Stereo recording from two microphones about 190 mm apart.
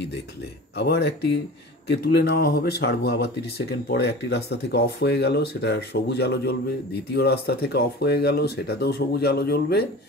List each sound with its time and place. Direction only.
0.7 s speech: 60° left (ahead or behind)